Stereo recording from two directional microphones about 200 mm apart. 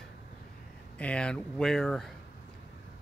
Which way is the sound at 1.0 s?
5° left (ahead or behind).